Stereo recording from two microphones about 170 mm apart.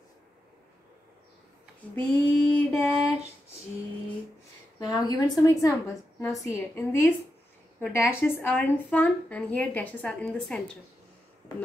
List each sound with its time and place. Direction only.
2.0 s mantra: 10° left (ahead or behind)
4.7 s a sound: 25° left (ahead or behind)
5.4 s a woman's voice: 20° left (ahead or behind)